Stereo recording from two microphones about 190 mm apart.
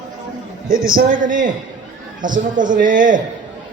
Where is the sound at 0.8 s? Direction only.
45° right (ahead or behind).